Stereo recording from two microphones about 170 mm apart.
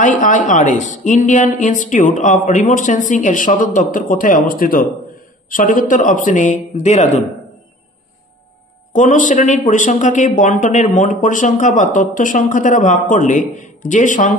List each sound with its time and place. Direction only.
0.0 s speech: 50° left (ahead or behind)
8.9 s speech: 50° left (ahead or behind)